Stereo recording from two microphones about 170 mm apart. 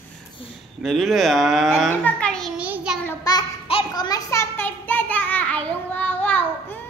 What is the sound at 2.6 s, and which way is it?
Child singing, 5° right (ahead or behind).